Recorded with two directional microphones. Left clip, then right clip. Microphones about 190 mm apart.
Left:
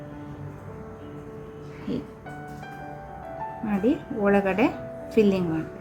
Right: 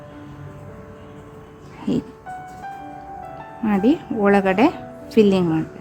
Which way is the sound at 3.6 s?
30° right (ahead or behind).